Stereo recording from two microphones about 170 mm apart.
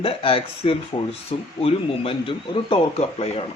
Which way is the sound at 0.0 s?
35° left (ahead or behind).